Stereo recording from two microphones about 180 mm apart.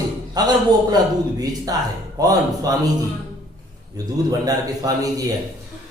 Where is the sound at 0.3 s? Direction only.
20° right (ahead or behind).